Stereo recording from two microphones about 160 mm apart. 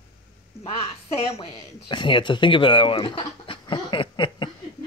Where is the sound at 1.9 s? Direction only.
30° left (ahead or behind).